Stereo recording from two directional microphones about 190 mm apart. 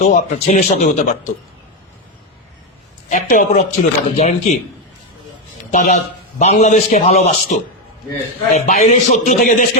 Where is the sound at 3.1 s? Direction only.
40° left (ahead or behind).